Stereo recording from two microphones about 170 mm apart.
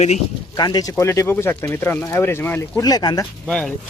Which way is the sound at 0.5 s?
25° left (ahead or behind).